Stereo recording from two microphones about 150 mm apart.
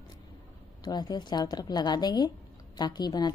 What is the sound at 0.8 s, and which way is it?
Speech, 25° left (ahead or behind).